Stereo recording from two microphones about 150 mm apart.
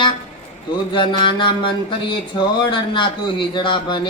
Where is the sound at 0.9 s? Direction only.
35° left (ahead or behind).